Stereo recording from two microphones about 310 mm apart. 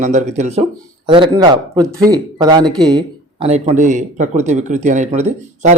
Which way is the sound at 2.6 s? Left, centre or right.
Centre.